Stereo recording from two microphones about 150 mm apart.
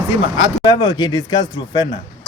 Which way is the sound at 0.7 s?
30° left (ahead or behind).